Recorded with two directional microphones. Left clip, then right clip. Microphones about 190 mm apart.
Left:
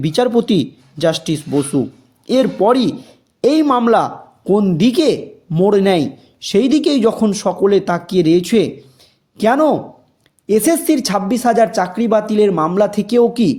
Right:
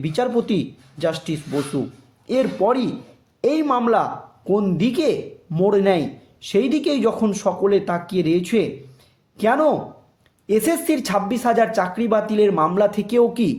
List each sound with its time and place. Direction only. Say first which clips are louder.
0.0 s speech: left 6 dB; 40° left (ahead or behind)